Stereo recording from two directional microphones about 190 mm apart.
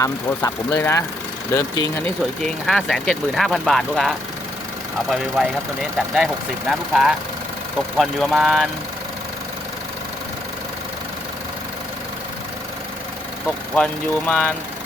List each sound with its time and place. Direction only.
0.0 s speech: 15° left (ahead or behind)
2.4 s speech: centre (ahead or behind)
13.7 s speech: 5° left (ahead or behind)